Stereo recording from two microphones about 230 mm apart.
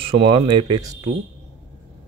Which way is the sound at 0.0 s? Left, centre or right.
Right.